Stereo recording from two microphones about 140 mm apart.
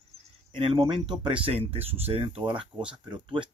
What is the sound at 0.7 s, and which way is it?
Speech, 30° right (ahead or behind).